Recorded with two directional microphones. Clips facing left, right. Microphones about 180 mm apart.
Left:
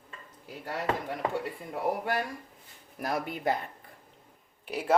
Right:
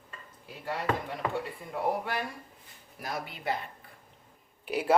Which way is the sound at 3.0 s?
50° left (ahead or behind).